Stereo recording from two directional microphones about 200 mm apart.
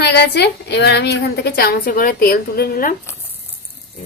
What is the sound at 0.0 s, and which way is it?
A woman's voice, 55° left (ahead or behind).